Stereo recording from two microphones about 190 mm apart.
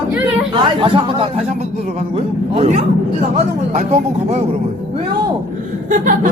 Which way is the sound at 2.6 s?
35° right (ahead or behind).